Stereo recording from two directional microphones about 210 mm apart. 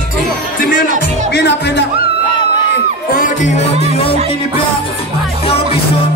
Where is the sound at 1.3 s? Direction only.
55° left (ahead or behind).